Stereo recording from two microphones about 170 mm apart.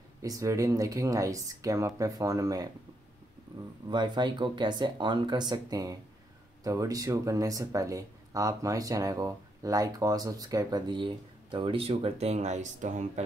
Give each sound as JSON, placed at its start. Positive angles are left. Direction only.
{"t": 0.2, "sound": "speech", "side_deg": -20}
{"t": 3.9, "sound": "speech", "side_deg": -25}